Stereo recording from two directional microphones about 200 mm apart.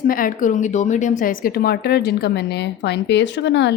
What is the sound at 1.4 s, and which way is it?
A woman's voice, 50° left (ahead or behind).